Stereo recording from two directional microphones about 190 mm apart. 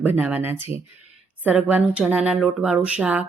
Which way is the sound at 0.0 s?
10° right (ahead or behind).